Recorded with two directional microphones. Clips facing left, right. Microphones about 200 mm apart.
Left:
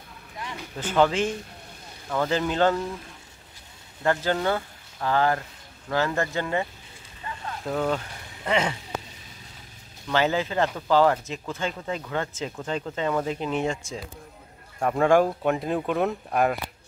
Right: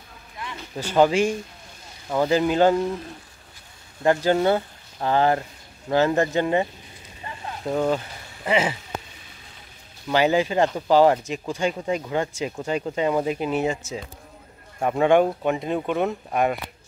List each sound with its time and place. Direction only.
0.7 s speech: 10° right (ahead or behind)
4.0 s speech: 15° right (ahead or behind)
7.2 s boat: 20° right (ahead or behind)
8.5 s speech: 5° right (ahead or behind)
10.0 s speech: 15° right (ahead or behind)